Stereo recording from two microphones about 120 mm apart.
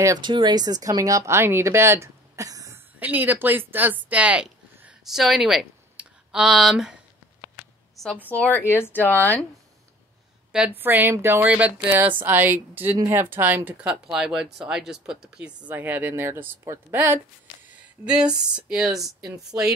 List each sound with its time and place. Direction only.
0.2 s speech: 40° right (ahead or behind)
3.0 s speech: 15° right (ahead or behind)
7.9 s a sound: centre (ahead or behind)
8.3 s speech: 15° left (ahead or behind)
10.5 s speech: 10° right (ahead or behind)
18.0 s speech: 5° right (ahead or behind)